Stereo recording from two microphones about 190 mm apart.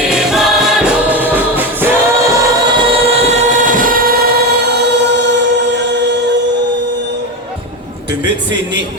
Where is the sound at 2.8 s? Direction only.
30° right (ahead or behind); by 6.3 s 65° right (ahead or behind).